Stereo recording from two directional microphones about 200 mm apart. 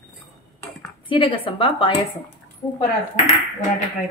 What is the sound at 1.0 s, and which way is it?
Speech, 25° left (ahead or behind).